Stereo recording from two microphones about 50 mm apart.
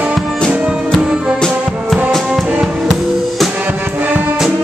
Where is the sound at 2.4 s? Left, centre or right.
Centre.